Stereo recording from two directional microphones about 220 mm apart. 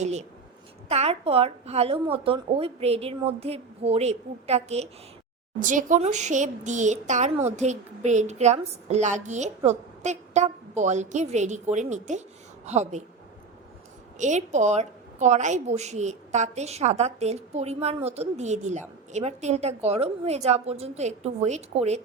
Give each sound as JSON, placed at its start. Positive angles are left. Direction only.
{"t": 0.0, "sound": "a sound", "side_deg": -30}
{"t": 0.9, "sound": "a woman's voice", "side_deg": -25}
{"t": 14.2, "sound": "a woman's voice", "side_deg": -35}